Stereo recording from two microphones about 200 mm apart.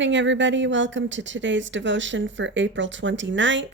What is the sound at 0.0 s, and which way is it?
A woman's voice, 65° right (ahead or behind).